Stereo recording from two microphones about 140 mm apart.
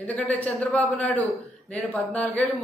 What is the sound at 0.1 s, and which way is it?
Speech, 10° left (ahead or behind).